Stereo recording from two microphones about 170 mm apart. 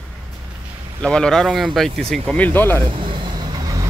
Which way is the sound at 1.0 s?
5° left (ahead or behind).